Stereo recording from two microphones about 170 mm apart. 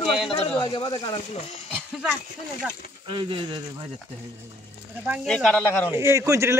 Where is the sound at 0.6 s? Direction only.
30° left (ahead or behind).